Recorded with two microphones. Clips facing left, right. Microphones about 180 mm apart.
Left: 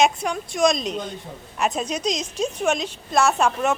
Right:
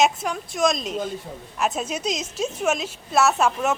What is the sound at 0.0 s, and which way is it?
A woman's voice, centre (ahead or behind).